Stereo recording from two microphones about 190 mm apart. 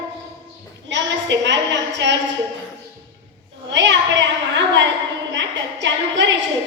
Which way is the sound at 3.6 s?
70° right (ahead or behind).